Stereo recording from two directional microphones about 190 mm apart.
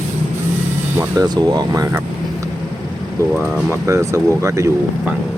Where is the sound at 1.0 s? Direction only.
20° right (ahead or behind).